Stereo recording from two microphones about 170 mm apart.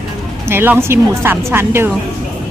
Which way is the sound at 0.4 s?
10° right (ahead or behind).